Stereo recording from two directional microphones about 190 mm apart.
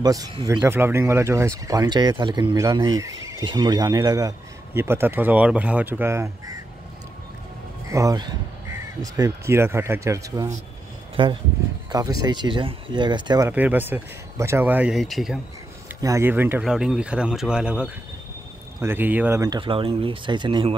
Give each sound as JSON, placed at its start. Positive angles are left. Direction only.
{"t": 0.0, "sound": "speech", "side_deg": -20}
{"t": 7.9, "sound": "speech", "side_deg": -15}
{"t": 13.5, "sound": "speech", "side_deg": -10}
{"t": 16.0, "sound": "speech", "side_deg": -15}